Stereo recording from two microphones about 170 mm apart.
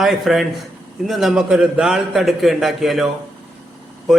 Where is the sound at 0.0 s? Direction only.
Centre (ahead or behind).